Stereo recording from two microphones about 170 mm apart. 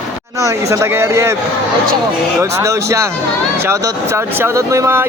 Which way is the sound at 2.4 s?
15° right (ahead or behind).